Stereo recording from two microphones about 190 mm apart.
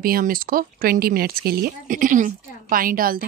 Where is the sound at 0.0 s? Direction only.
50° right (ahead or behind).